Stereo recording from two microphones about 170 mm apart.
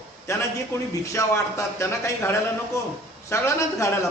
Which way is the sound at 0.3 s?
15° left (ahead or behind).